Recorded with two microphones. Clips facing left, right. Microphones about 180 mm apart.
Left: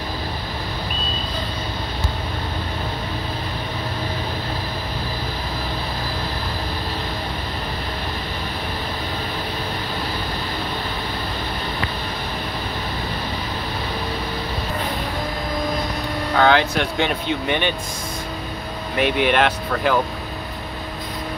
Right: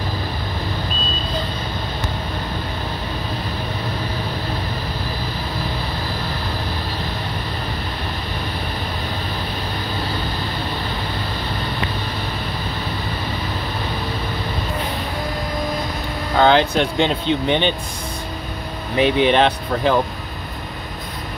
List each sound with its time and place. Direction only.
16.3 s speech: 20° right (ahead or behind)
18.9 s speech: 5° left (ahead or behind)
19.3 s speech: 25° right (ahead or behind)